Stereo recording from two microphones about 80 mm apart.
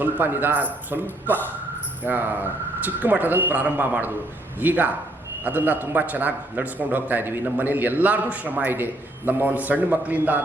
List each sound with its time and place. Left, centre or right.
0.0 s a man's voice: right